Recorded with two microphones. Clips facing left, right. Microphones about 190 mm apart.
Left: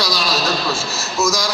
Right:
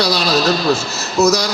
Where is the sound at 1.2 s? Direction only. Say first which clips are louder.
Right 6 dB; 65° right (ahead or behind).